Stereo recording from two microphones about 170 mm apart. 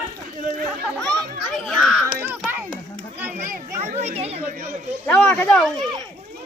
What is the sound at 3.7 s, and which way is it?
Children playing, 40° right (ahead or behind).